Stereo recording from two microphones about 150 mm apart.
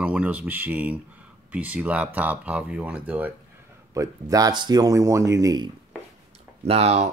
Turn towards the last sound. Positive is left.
turn(degrees=-45)  # may be behind; listen again after turning